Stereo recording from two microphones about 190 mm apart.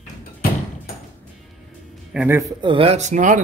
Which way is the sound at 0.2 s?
50° left (ahead or behind).